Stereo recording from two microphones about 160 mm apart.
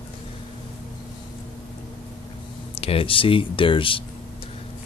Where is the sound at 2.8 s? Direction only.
35° left (ahead or behind).